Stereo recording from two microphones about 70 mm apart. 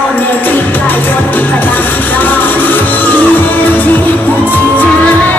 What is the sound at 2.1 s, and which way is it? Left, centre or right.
Music, left.